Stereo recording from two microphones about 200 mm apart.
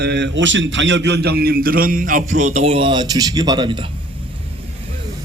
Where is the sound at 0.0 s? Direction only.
60° right (ahead or behind); by 3.8 s 25° right (ahead or behind).